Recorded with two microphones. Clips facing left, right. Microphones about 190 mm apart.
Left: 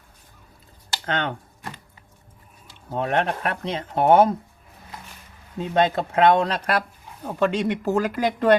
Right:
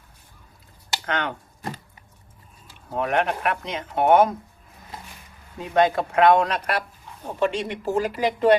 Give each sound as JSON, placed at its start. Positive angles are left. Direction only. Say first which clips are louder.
{"t": 1.0, "sound": "speech", "louder": "left 1 dB", "side_deg": 25}
{"t": 2.9, "sound": "speech", "louder": "even", "side_deg": 30}
{"t": 5.5, "sound": "speech", "louder": "right 1 dB", "side_deg": 25}
{"t": 7.3, "sound": "speech", "louder": "left 2 dB", "side_deg": 45}